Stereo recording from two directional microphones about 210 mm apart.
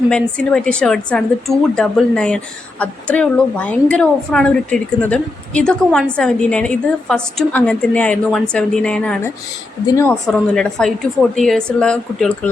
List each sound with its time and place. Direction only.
0.1 s a woman's voice: 5° left (ahead or behind)